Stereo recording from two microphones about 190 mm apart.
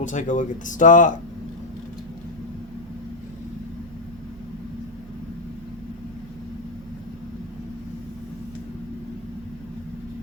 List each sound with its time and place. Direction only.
0.0 s speech: 40° left (ahead or behind)